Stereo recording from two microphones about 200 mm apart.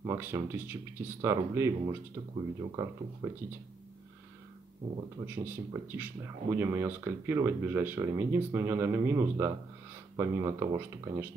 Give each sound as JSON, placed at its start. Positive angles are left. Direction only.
{"t": 0.0, "sound": "speech", "side_deg": -10}
{"t": 5.2, "sound": "speech", "side_deg": -10}